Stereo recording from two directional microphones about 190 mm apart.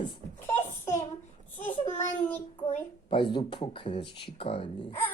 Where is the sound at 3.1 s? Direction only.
25° left (ahead or behind).